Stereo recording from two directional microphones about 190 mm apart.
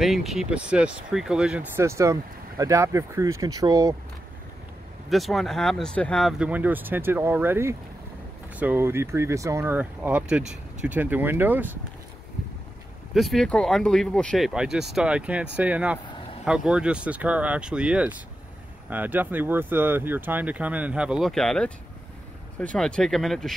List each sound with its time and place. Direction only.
0.0 s speech: centre (ahead or behind); by 3.9 s 20° right (ahead or behind)
5.1 s speech: centre (ahead or behind)
13.1 s speech: centre (ahead or behind)
22.8 s speech: 5° left (ahead or behind)